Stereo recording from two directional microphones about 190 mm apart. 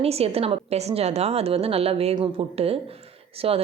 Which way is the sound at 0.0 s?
30° right (ahead or behind).